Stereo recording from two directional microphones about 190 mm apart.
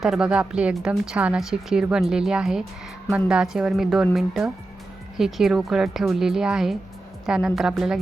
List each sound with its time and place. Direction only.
0.0 s a woman's voice: 5° right (ahead or behind)